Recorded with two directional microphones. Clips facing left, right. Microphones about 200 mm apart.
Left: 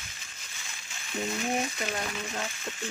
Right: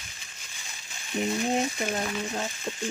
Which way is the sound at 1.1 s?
20° right (ahead or behind).